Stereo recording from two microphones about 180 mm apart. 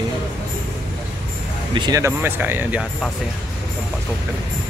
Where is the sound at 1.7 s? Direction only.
20° right (ahead or behind).